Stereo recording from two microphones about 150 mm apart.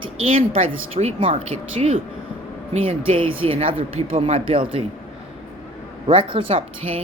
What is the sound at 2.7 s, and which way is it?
Speech, 40° right (ahead or behind).